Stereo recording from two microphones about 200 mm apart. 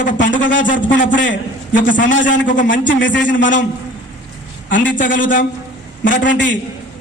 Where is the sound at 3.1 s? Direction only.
65° left (ahead or behind).